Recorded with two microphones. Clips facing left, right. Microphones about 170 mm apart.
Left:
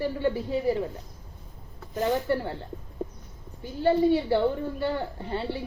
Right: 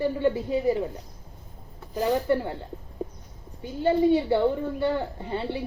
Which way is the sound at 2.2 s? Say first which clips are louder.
Right 3 dB; 20° right (ahead or behind).